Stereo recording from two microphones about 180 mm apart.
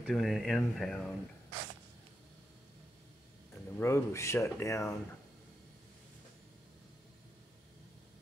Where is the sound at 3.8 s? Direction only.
15° left (ahead or behind).